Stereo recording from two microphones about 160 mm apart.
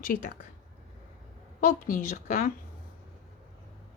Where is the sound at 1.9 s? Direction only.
60° left (ahead or behind).